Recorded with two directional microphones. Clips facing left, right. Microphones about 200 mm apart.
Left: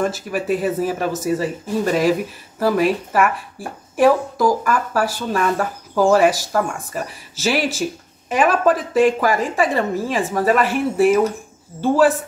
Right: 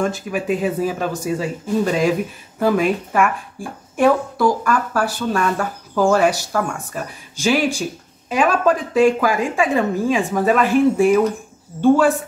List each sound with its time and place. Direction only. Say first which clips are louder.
0.0 s a woman's voice: even; centre (ahead or behind)